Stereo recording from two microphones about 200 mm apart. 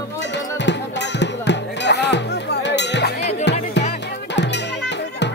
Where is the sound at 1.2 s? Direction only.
60° left (ahead or behind).